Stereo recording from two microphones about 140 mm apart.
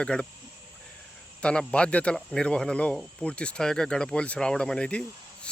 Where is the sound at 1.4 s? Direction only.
5° left (ahead or behind).